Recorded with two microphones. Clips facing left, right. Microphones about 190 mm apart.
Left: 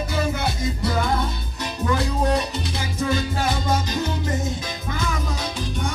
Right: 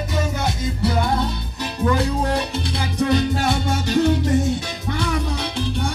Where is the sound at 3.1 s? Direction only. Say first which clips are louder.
Right 5 dB; 70° right (ahead or behind).